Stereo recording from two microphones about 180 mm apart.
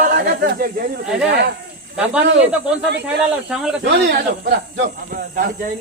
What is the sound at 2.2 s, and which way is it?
Speech, 75° right (ahead or behind).